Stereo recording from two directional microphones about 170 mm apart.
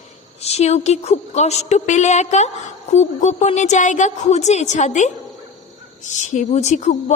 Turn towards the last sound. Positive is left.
turn(degrees=45)  # may be behind; listen again after turning